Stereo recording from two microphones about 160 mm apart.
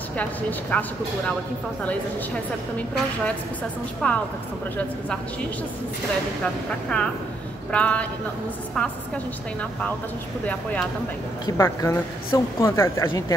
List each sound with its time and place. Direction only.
0.2 s speech: 10° left (ahead or behind)
4.0 s speech: 5° left (ahead or behind)
6.4 s speech: 5° left (ahead or behind)
10.4 s speech: 10° left (ahead or behind)